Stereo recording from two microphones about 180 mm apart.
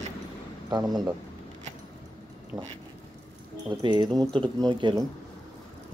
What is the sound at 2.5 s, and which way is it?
Speech, 20° right (ahead or behind).